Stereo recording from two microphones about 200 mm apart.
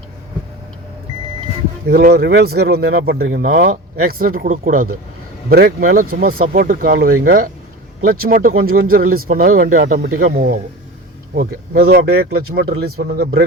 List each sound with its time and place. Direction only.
1.9 s speech: 50° right (ahead or behind)